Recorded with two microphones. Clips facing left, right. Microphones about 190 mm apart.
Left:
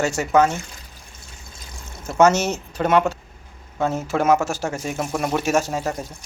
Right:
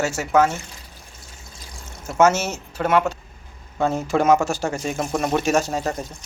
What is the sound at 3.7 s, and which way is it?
Speech, 5° left (ahead or behind).